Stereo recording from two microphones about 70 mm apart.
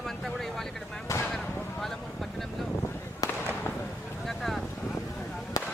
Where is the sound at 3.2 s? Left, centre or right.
Left.